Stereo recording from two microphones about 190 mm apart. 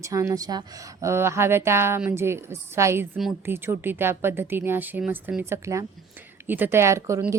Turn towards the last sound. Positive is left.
turn(degrees=-15)  # may be behind; listen again after turning